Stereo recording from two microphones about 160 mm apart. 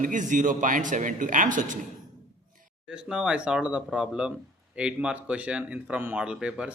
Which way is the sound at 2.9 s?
5° right (ahead or behind).